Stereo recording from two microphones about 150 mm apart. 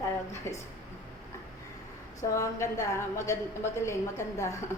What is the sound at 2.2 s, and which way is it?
A woman's voice, 20° left (ahead or behind).